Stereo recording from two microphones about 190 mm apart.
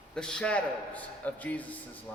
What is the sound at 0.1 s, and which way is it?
A man's voice, 5° left (ahead or behind).